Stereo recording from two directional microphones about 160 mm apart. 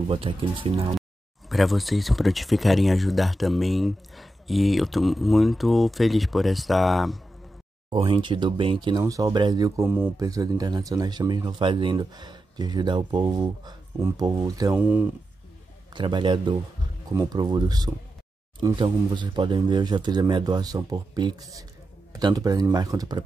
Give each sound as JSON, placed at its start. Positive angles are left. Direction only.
{"t": 0.1, "sound": "speech", "side_deg": -35}
{"t": 1.5, "sound": "speech", "side_deg": 0}
{"t": 7.9, "sound": "speech", "side_deg": -30}
{"t": 14.8, "sound": "speech", "side_deg": -10}
{"t": 15.9, "sound": "speech", "side_deg": -30}